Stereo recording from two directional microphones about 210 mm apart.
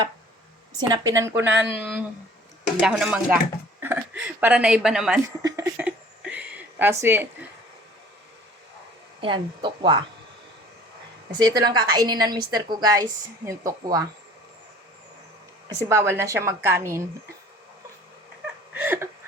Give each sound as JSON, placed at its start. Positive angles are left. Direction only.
{"t": 0.8, "sound": "a woman's voice", "side_deg": -15}
{"t": 2.6, "sound": "speech", "side_deg": -5}
{"t": 5.4, "sound": "a sound", "side_deg": -15}
{"t": 9.2, "sound": "a woman's voice", "side_deg": -25}
{"t": 11.4, "sound": "a woman's voice", "side_deg": -20}
{"t": 15.9, "sound": "a woman's voice", "side_deg": -15}
{"t": 18.7, "sound": "a sound", "side_deg": -10}